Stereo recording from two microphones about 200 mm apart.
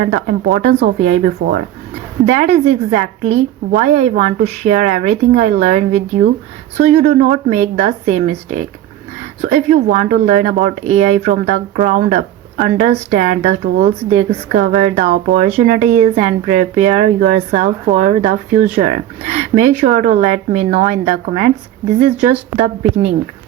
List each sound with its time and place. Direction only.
0.0 s speech: 40° right (ahead or behind)
7.0 s speech: 45° right (ahead or behind)